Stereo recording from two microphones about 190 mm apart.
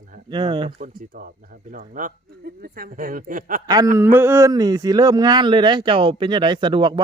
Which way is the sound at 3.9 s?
10° right (ahead or behind).